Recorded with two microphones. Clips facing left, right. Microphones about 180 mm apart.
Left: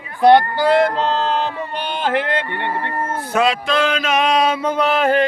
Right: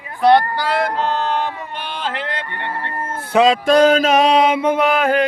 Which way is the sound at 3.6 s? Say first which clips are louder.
Right 7 dB; 40° right (ahead or behind).